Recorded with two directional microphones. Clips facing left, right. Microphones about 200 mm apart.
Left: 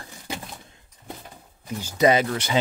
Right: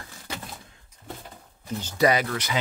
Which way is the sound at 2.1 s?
25° left (ahead or behind).